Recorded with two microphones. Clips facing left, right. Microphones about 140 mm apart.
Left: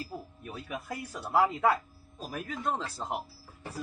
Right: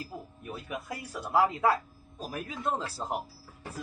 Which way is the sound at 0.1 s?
20° right (ahead or behind).